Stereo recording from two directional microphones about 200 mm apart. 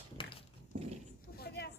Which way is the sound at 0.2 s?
25° left (ahead or behind).